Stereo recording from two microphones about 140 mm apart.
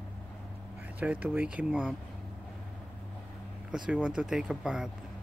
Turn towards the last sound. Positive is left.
turn(degrees=-5)  # may be behind; listen again after turning